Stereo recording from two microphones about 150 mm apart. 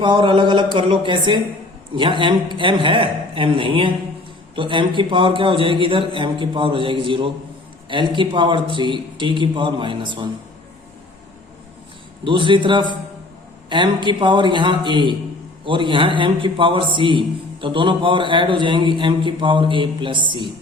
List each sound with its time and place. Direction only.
0.0 s a man's voice: 35° right (ahead or behind)
12.2 s a man's voice: 35° right (ahead or behind)